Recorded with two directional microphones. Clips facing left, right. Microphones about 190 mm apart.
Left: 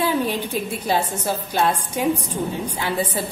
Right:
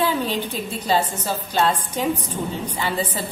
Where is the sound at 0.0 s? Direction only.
10° left (ahead or behind).